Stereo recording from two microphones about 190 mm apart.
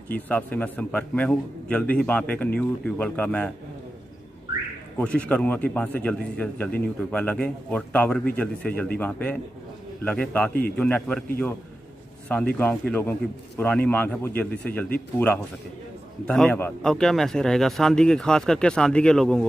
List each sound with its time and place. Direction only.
0.3 s a man's voice: 10° left (ahead or behind)
5.0 s a man's voice: 5° left (ahead or behind)
12.5 s a man's voice: 10° left (ahead or behind)